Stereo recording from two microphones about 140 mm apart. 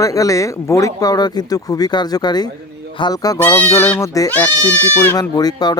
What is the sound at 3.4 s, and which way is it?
Speech, 15° left (ahead or behind).